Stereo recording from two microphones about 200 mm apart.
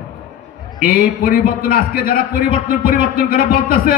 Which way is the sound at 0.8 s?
45° left (ahead or behind).